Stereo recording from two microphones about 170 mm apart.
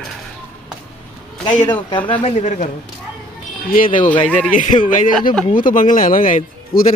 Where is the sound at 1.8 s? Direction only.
30° left (ahead or behind).